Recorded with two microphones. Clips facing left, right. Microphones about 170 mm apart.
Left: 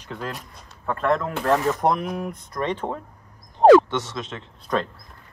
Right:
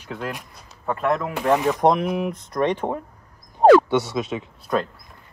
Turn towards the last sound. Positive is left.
turn(degrees=-5)  # may be behind; listen again after turning